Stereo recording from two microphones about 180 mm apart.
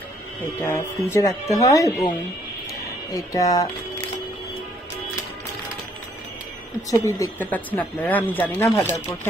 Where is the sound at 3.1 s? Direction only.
20° left (ahead or behind).